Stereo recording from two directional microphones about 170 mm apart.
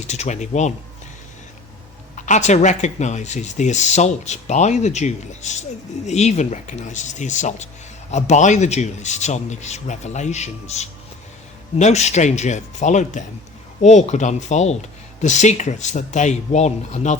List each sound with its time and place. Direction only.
0.0 s speech: 40° left (ahead or behind)
2.1 s speech: 45° left (ahead or behind)